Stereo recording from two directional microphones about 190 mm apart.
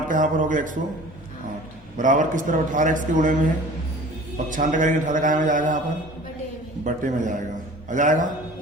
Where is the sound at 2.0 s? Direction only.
45° right (ahead or behind).